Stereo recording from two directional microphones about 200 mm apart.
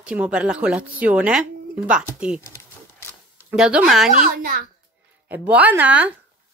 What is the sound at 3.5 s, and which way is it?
Speech, 5° right (ahead or behind).